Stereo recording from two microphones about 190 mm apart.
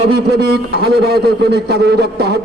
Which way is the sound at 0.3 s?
55° right (ahead or behind).